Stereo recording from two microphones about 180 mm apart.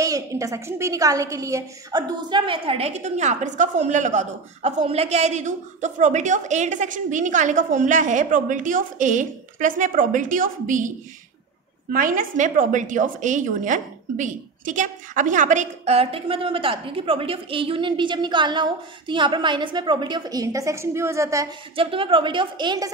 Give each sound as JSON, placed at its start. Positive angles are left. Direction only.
{"t": 0.0, "sound": "a woman's voice", "side_deg": -15}
{"t": 11.9, "sound": "a woman's voice", "side_deg": -50}
{"t": 21.7, "sound": "a woman's voice", "side_deg": -30}